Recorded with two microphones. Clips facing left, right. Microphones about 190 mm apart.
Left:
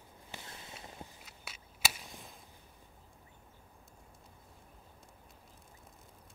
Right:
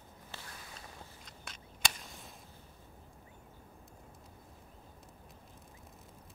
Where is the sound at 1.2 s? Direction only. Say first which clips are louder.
Right 2 dB; 5° left (ahead or behind).